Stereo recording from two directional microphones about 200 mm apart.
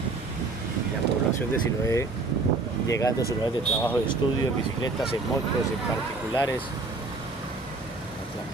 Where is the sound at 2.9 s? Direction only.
15° left (ahead or behind).